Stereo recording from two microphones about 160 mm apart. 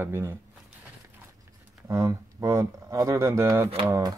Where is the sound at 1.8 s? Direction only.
20° right (ahead or behind).